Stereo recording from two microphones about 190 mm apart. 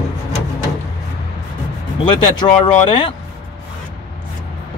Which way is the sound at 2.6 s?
30° left (ahead or behind).